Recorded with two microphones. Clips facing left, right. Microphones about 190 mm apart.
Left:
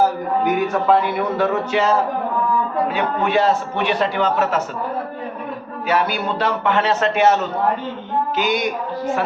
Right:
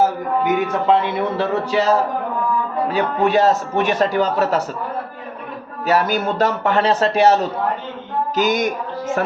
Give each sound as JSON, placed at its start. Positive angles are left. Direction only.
{"t": 0.4, "sound": "a man's voice", "side_deg": -25}
{"t": 5.8, "sound": "a man's voice", "side_deg": -40}
{"t": 8.4, "sound": "music", "side_deg": -45}